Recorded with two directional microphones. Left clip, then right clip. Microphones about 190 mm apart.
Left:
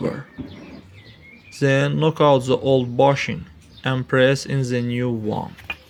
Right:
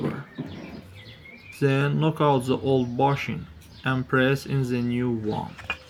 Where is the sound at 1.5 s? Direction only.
45° left (ahead or behind).